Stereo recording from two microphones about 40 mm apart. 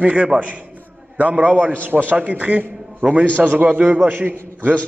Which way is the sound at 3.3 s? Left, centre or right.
Right.